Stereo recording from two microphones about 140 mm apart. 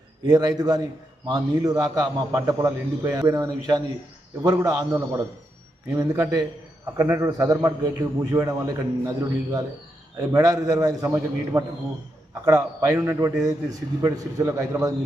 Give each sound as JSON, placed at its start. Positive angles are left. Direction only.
{"t": 0.3, "sound": "a man's voice", "side_deg": -30}